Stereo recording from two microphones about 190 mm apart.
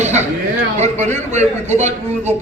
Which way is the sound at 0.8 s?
35° right (ahead or behind).